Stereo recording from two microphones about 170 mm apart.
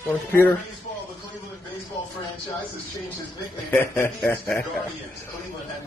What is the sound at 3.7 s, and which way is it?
Speech, 10° left (ahead or behind).